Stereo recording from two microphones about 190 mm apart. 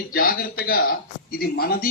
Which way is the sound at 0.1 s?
50° left (ahead or behind).